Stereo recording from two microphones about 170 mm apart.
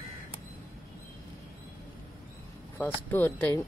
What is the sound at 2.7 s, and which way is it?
Speech, 10° left (ahead or behind).